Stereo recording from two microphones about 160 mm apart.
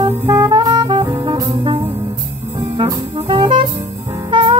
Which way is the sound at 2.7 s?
30° right (ahead or behind).